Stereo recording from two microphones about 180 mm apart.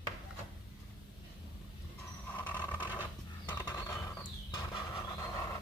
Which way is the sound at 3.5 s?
20° left (ahead or behind).